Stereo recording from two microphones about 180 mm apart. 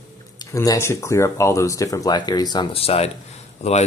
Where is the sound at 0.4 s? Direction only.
20° left (ahead or behind).